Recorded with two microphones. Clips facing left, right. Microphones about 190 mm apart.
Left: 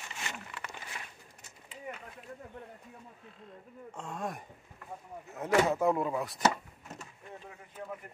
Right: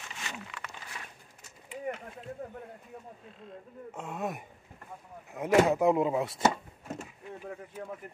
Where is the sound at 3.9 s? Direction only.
5° right (ahead or behind); by 6.4 s 25° right (ahead or behind).